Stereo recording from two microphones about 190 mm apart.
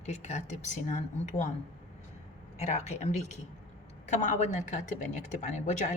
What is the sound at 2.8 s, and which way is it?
A woman's voice, 35° left (ahead or behind).